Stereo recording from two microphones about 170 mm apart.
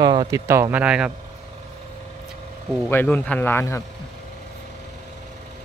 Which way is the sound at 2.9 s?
10° left (ahead or behind).